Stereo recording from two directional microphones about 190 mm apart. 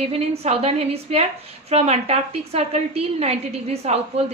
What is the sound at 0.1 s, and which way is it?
Speech, 30° right (ahead or behind).